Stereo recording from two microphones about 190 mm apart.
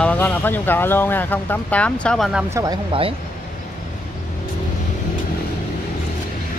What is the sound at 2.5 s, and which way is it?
Speech, 20° right (ahead or behind).